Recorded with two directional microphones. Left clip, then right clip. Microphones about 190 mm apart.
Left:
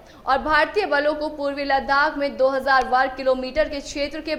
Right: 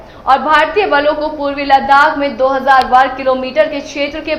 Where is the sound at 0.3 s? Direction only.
45° left (ahead or behind).